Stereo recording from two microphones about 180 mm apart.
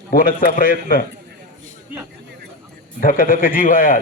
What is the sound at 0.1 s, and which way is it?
Speech, 50° left (ahead or behind).